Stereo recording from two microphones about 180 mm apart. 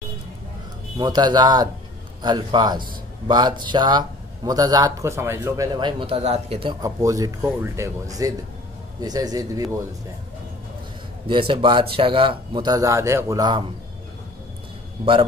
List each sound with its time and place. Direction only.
0.9 s speech: 20° right (ahead or behind)
11.2 s speech: 30° right (ahead or behind)